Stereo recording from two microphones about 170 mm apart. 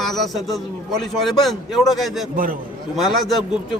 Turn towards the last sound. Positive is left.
turn(degrees=0)  # may be behind; listen again after turning